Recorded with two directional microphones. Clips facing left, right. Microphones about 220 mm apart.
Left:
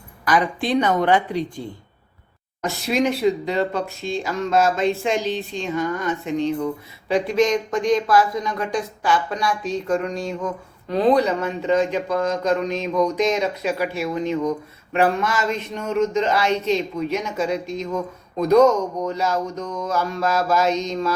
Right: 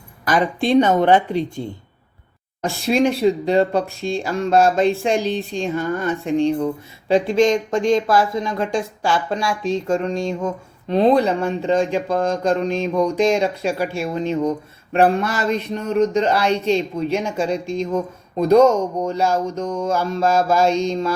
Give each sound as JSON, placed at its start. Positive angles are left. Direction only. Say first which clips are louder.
{"t": 0.3, "sound": "speech", "louder": "right 3 dB", "side_deg": -25}